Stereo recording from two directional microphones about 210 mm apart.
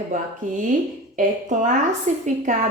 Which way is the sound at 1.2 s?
35° right (ahead or behind).